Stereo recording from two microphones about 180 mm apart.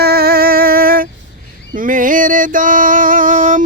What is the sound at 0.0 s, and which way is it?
Music, 60° right (ahead or behind).